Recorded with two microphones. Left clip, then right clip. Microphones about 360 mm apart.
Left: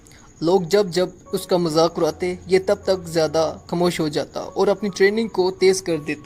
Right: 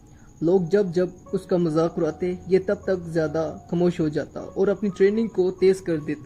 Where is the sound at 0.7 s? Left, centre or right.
Left.